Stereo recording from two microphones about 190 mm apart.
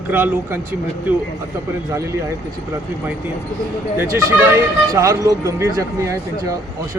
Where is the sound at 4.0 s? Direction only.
15° right (ahead or behind).